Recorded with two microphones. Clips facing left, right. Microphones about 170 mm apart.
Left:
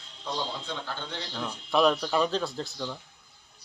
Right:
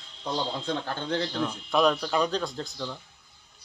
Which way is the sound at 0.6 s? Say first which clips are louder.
Right 6 dB; 50° right (ahead or behind).